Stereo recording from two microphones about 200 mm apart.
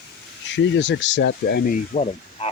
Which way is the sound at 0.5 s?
60° left (ahead or behind).